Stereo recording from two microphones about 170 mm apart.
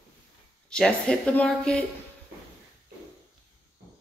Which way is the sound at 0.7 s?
5° left (ahead or behind).